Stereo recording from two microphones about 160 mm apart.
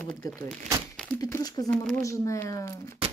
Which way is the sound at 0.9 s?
5° left (ahead or behind).